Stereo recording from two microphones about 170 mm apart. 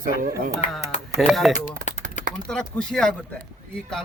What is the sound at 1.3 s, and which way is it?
Speech, centre (ahead or behind).